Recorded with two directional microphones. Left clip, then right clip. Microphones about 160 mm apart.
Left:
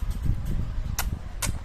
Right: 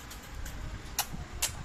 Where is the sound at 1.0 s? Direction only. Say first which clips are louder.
Left 1 dB; 25° left (ahead or behind).